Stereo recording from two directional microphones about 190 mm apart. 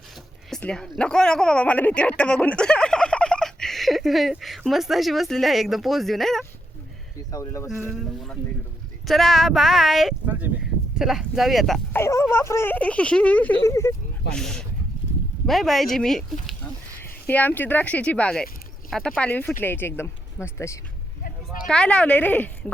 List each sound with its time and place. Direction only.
0.5 s speech: 5° left (ahead or behind)
7.3 s speech: 15° left (ahead or behind)
7.9 s speech: centre (ahead or behind)
11.9 s speech: 15° left (ahead or behind)
14.3 s speech: 5° left (ahead or behind)
21.2 s a sound: 45° left (ahead or behind)
21.7 s speech: 5° left (ahead or behind)